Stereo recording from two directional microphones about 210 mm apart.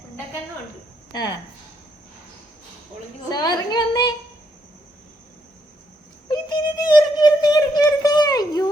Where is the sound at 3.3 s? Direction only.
20° left (ahead or behind).